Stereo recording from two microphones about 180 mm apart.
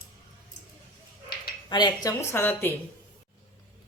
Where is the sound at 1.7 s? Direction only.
25° left (ahead or behind).